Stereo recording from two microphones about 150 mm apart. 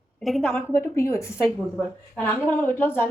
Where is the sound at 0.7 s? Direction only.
15° left (ahead or behind).